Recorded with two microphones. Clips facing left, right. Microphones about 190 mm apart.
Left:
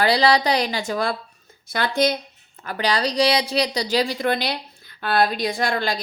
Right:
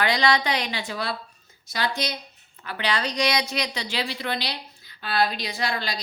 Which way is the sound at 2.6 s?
40° left (ahead or behind).